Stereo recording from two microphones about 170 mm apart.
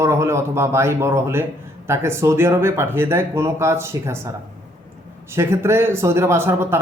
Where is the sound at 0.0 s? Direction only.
15° right (ahead or behind).